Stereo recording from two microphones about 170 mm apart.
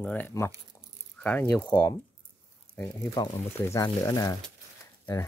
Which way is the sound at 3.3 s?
20° left (ahead or behind).